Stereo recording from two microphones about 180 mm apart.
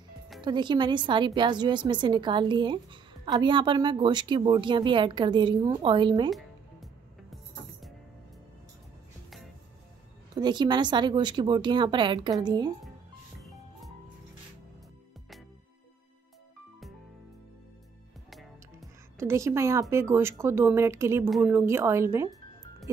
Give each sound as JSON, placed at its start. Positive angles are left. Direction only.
{"t": 0.4, "sound": "a woman's voice", "side_deg": -25}
{"t": 6.3, "sound": "music", "side_deg": 0}
{"t": 10.3, "sound": "a woman's voice", "side_deg": -25}
{"t": 13.4, "sound": "music", "side_deg": 0}
{"t": 18.3, "sound": "music", "side_deg": 0}
{"t": 19.1, "sound": "speech", "side_deg": -15}